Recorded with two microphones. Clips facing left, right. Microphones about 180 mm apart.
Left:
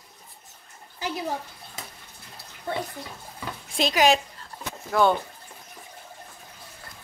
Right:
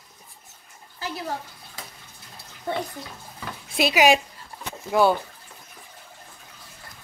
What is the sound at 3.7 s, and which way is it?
Speech, 10° right (ahead or behind).